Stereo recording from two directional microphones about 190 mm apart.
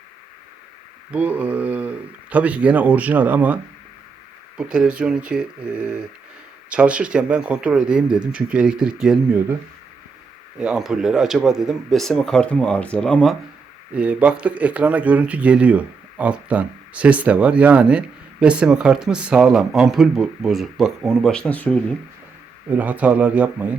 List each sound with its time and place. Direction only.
1.1 s speech: 5° right (ahead or behind)
10.6 s speech: 5° right (ahead or behind)
13.9 s speech: 5° right (ahead or behind)
22.7 s speech: 10° right (ahead or behind)